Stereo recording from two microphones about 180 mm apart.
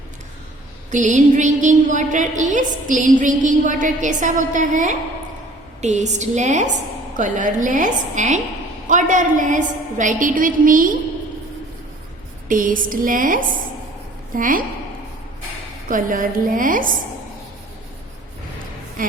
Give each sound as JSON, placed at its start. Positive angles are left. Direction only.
{"t": 0.9, "sound": "a woman's voice", "side_deg": -45}
{"t": 12.5, "sound": "a woman's voice", "side_deg": -50}
{"t": 15.9, "sound": "a woman's voice", "side_deg": -50}
{"t": 19.0, "sound": "a woman's voice", "side_deg": -50}